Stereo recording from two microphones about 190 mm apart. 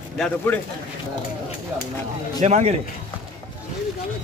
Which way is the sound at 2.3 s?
35° right (ahead or behind).